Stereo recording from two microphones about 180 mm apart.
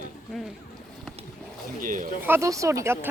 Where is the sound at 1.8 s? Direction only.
45° right (ahead or behind).